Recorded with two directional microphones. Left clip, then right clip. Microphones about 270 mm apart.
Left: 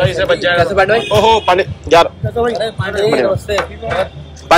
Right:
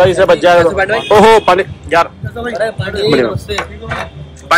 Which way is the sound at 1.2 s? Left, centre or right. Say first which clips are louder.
Right 5 dB; centre.